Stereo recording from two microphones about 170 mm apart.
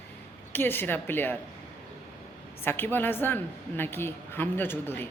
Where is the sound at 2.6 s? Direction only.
10° left (ahead or behind).